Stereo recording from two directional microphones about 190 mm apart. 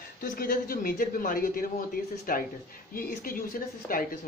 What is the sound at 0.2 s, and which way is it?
Speech, 50° left (ahead or behind).